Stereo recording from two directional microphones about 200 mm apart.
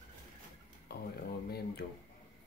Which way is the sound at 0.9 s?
55° left (ahead or behind).